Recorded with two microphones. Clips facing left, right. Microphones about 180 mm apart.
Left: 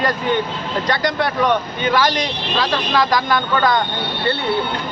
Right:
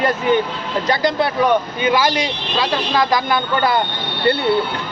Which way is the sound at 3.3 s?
10° right (ahead or behind).